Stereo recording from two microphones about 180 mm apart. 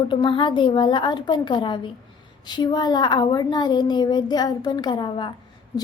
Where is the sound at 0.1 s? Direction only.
25° left (ahead or behind).